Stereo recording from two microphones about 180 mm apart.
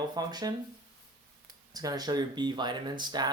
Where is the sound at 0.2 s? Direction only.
20° right (ahead or behind).